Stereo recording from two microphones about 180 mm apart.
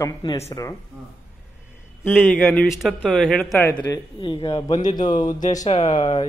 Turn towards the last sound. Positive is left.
turn(degrees=25)  # may be behind; listen again after turning